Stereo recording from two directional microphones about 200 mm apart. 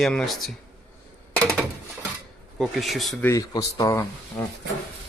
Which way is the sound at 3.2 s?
15° left (ahead or behind).